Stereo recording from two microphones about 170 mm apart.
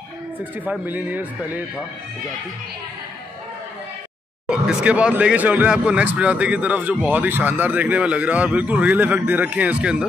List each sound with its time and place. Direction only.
0.4 s speech: 10° right (ahead or behind)
4.5 s speech: 5° right (ahead or behind)